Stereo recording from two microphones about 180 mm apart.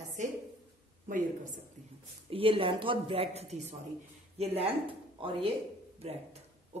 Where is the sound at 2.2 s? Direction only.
30° right (ahead or behind).